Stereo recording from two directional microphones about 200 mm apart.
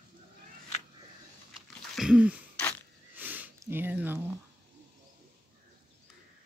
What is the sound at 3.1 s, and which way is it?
Sniff, 10° right (ahead or behind).